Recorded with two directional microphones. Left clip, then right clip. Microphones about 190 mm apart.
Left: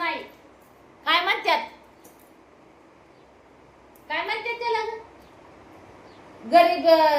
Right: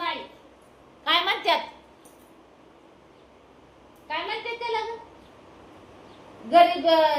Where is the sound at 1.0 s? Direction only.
5° left (ahead or behind).